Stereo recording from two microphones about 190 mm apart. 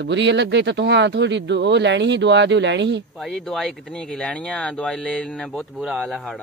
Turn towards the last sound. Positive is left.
turn(degrees=0)  # may be behind; listen again after turning